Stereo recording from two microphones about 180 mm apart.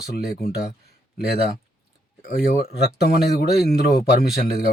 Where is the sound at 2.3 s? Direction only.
60° left (ahead or behind).